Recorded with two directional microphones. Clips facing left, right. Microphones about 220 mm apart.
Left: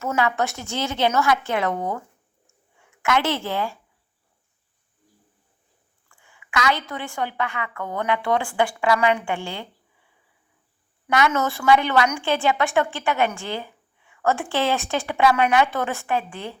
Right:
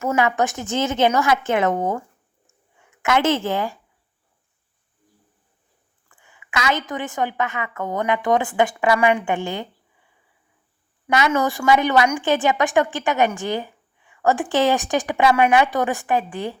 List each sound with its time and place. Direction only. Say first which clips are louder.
0.0 s a woman's voice: right 3 dB; 15° right (ahead or behind)
3.0 s a woman's voice: right 4 dB; 20° right (ahead or behind)
6.1 s a woman's voice: right 2 dB; 20° right (ahead or behind)
11.3 s a woman's voice: right 2 dB; 15° right (ahead or behind)